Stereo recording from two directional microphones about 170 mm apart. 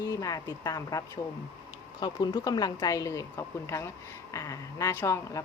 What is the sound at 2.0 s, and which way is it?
A woman's voice, 25° left (ahead or behind).